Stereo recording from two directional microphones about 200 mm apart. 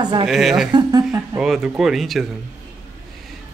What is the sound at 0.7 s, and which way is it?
Speech, 20° right (ahead or behind).